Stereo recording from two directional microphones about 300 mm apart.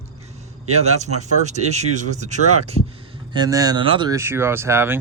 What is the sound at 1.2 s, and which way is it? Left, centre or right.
Speech, right.